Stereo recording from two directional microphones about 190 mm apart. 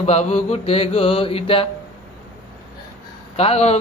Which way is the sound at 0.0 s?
35° left (ahead or behind).